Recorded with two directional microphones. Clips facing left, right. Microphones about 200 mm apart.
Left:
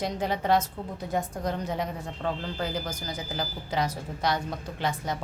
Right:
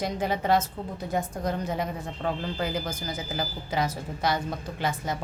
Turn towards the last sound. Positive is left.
turn(degrees=-5)  # may be behind; listen again after turning